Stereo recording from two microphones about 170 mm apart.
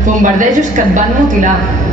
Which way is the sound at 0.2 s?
45° right (ahead or behind).